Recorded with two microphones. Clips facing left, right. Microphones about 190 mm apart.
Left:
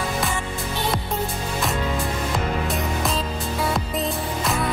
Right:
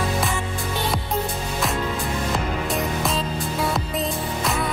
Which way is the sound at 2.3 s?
Centre (ahead or behind).